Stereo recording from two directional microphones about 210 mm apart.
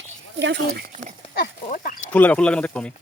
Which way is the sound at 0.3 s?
55° right (ahead or behind).